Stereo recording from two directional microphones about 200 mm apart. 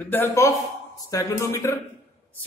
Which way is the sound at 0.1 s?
15° left (ahead or behind).